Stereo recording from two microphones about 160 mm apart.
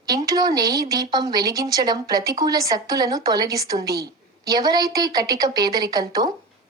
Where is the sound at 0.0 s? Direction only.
25° right (ahead or behind).